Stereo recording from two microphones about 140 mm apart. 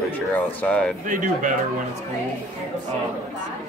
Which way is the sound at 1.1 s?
70° right (ahead or behind).